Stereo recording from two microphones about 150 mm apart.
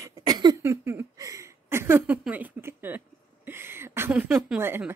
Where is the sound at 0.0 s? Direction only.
25° right (ahead or behind).